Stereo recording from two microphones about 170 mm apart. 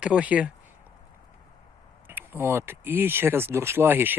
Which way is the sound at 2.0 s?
15° right (ahead or behind).